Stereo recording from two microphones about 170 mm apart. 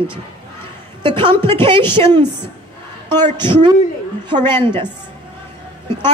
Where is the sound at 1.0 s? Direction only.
30° right (ahead or behind).